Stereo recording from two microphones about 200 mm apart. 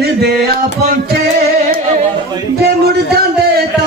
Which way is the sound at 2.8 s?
50° right (ahead or behind).